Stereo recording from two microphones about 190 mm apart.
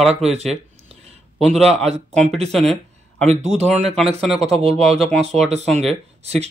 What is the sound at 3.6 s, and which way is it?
Speech, 35° right (ahead or behind).